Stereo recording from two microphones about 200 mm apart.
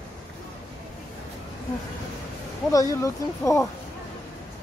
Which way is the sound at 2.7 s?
15° left (ahead or behind).